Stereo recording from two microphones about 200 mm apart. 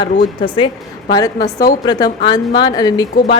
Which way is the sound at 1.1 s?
20° left (ahead or behind).